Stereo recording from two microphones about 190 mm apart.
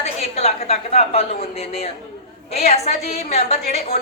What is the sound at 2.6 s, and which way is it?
A woman's voice, 35° left (ahead or behind).